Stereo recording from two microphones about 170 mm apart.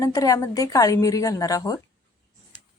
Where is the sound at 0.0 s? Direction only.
20° left (ahead or behind).